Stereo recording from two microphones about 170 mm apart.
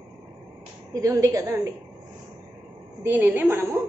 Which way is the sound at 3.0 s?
10° right (ahead or behind).